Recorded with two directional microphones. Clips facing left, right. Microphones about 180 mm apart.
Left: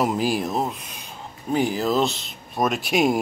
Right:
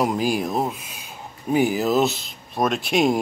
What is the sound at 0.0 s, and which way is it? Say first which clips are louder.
Speech: right 1 dB; centre (ahead or behind).